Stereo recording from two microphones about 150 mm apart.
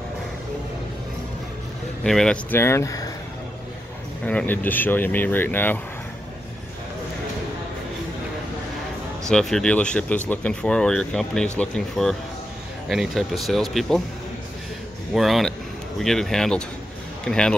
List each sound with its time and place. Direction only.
2.0 s speech: 5° left (ahead or behind)
2.6 s speech: 20° left (ahead or behind)
4.3 s speech: 10° left (ahead or behind)
9.3 s speech: 5° left (ahead or behind)
15.1 s speech: centre (ahead or behind)